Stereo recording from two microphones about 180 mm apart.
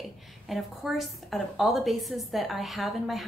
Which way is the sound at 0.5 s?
Centre (ahead or behind).